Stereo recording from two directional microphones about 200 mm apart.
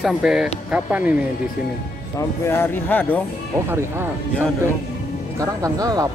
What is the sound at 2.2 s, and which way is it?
Speech, 10° left (ahead or behind).